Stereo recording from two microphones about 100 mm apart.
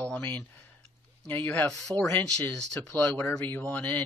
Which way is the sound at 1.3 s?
20° left (ahead or behind).